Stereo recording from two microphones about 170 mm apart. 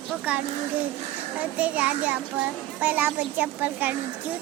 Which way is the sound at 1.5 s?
10° right (ahead or behind).